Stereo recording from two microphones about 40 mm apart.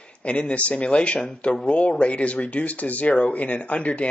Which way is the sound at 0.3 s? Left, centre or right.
Left.